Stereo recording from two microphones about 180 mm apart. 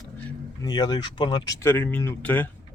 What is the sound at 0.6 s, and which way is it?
Speech, 25° left (ahead or behind).